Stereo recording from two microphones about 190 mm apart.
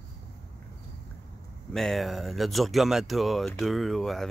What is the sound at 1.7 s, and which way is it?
Speech, centre (ahead or behind).